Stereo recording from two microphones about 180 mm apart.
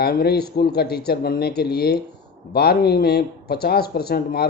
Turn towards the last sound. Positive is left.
turn(degrees=60)  # may be behind; listen again after turning